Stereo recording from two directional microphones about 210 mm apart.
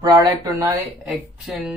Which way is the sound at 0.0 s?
20° right (ahead or behind).